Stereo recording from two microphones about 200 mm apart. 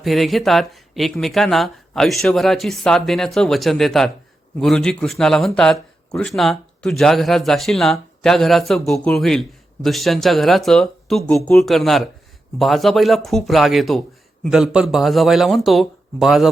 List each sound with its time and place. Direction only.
0.0 s speech: centre (ahead or behind)